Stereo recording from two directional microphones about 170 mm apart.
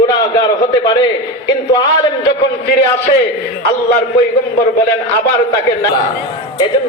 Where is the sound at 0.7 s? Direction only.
20° left (ahead or behind).